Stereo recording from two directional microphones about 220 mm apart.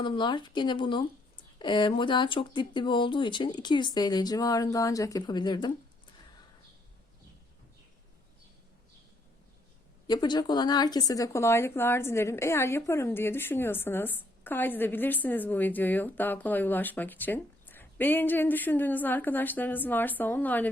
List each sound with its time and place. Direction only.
0.0 s speech: 20° left (ahead or behind)
10.1 s speech: 20° left (ahead or behind)